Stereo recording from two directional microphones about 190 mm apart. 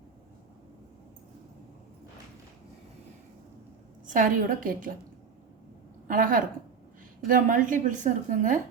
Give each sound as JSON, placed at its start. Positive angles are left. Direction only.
{"t": 4.0, "sound": "a woman's voice", "side_deg": -45}
{"t": 6.1, "sound": "a woman's voice", "side_deg": -45}